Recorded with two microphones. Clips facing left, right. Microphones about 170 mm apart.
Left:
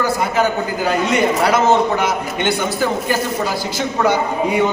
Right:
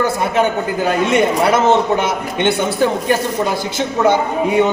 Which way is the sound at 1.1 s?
25° right (ahead or behind).